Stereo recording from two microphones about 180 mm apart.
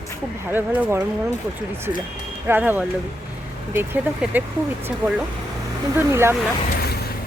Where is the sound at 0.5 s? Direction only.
10° right (ahead or behind).